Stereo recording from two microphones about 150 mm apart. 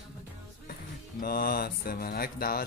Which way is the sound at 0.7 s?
75° left (ahead or behind).